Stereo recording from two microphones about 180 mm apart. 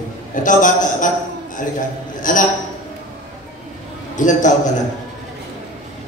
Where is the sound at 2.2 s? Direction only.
45° left (ahead or behind).